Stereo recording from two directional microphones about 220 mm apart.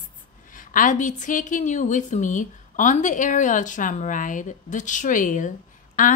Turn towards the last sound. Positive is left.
turn(degrees=40)  # may be behind; listen again after turning